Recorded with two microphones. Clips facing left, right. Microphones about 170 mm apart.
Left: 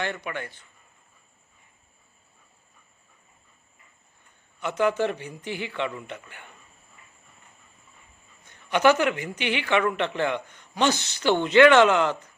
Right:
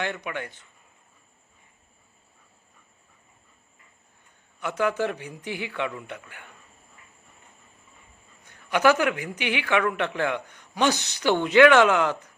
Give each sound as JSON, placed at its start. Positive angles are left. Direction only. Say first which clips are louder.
{"t": 0.3, "sound": "a man's voice", "louder": "right 1 dB", "side_deg": -15}
{"t": 4.6, "sound": "a man's voice", "louder": "left 2 dB", "side_deg": -5}
{"t": 8.4, "sound": "a man's voice", "louder": "left 1 dB", "side_deg": -5}